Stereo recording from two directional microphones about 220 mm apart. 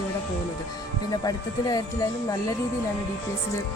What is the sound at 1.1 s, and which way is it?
Speech, 15° left (ahead or behind).